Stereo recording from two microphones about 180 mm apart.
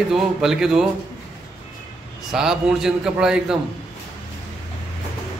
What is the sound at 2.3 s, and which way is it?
A man's voice, 5° right (ahead or behind).